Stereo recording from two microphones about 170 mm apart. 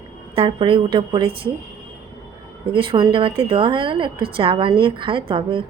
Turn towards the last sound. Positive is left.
turn(degrees=-30)  # may be behind; listen again after turning